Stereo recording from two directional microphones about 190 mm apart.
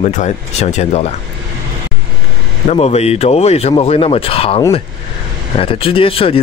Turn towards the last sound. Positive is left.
turn(degrees=30)  # may be behind; listen again after turning